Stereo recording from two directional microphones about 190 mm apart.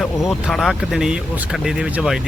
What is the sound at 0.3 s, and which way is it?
Speech, centre (ahead or behind).